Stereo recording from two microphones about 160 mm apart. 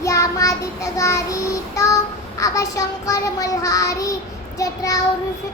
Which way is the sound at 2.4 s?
20° left (ahead or behind).